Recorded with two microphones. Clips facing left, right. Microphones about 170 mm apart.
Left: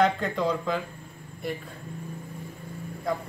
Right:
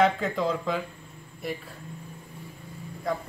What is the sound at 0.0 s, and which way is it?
A man's voice, centre (ahead or behind).